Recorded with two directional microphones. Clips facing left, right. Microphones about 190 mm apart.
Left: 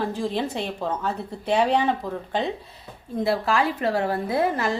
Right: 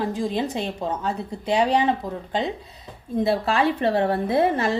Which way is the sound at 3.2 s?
25° right (ahead or behind).